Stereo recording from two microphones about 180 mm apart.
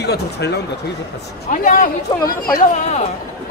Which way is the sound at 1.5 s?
45° left (ahead or behind).